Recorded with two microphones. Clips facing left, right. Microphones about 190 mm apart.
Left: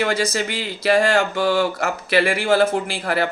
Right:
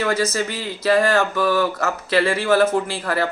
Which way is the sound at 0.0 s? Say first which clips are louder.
Even; 30° left (ahead or behind).